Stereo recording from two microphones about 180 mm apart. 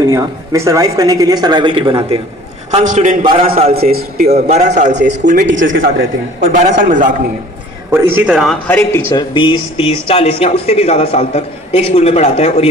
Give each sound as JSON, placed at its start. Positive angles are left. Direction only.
{"t": 0.0, "sound": "speech", "side_deg": -20}
{"t": 2.7, "sound": "a man's voice", "side_deg": -45}
{"t": 3.3, "sound": "a man's voice", "side_deg": -30}
{"t": 3.7, "sound": "a man's voice", "side_deg": -60}
{"t": 4.3, "sound": "a man's voice", "side_deg": -40}
{"t": 4.9, "sound": "speech", "side_deg": -75}
{"t": 5.2, "sound": "a man's voice", "side_deg": -45}
{"t": 5.5, "sound": "speech", "side_deg": -90}
{"t": 5.8, "sound": "a man's voice", "side_deg": -50}
{"t": 7.9, "sound": "a man's voice", "side_deg": -10}
{"t": 8.6, "sound": "a man's voice", "side_deg": 10}
{"t": 9.1, "sound": "speech", "side_deg": 25}